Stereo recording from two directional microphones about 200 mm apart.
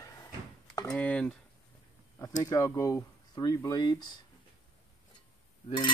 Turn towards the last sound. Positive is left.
turn(degrees=25)  # may be behind; listen again after turning